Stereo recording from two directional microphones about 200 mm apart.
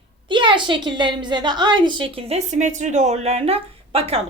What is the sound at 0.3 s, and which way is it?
A woman's voice, 25° right (ahead or behind).